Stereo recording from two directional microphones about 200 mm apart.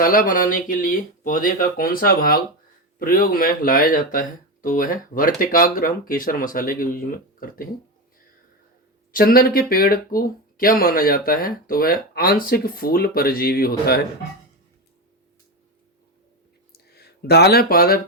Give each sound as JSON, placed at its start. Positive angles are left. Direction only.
{"t": 0.0, "sound": "speech", "side_deg": 45}
{"t": 9.1, "sound": "speech", "side_deg": 45}
{"t": 16.7, "sound": "a sound", "side_deg": 50}